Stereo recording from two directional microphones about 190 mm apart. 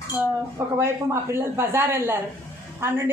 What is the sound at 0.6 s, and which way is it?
A woman's voice, 15° right (ahead or behind).